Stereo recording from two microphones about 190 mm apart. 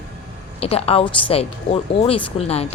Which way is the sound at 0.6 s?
30° left (ahead or behind).